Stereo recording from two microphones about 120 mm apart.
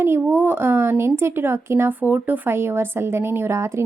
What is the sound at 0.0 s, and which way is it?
A woman's voice, 20° right (ahead or behind).